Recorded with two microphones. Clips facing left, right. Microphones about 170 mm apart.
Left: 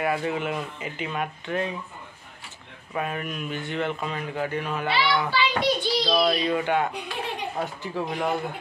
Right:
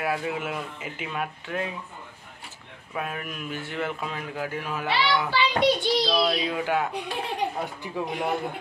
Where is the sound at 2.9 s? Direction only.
Centre (ahead or behind).